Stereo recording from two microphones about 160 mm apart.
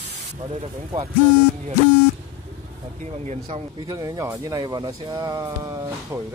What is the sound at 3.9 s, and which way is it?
Speech, 20° right (ahead or behind).